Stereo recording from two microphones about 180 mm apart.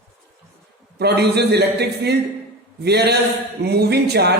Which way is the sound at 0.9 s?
65° right (ahead or behind).